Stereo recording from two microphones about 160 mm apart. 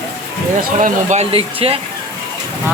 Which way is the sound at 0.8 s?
50° right (ahead or behind).